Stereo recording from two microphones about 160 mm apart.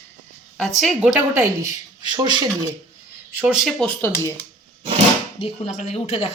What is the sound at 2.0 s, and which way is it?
Speech, 25° right (ahead or behind).